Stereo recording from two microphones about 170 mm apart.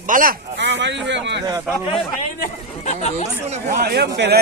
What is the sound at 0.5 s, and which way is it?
Speech, 90° right.